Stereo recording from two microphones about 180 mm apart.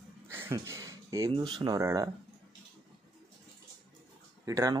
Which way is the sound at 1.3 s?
25° right (ahead or behind).